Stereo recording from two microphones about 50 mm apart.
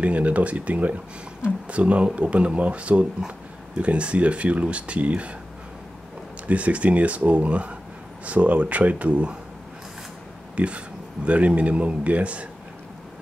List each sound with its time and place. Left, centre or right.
0.0 s speech: right
6.4 s speech: right
10.5 s a sound: right
11.2 s speech: right